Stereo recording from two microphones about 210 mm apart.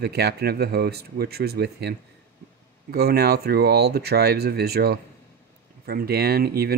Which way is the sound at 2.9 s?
50° right (ahead or behind).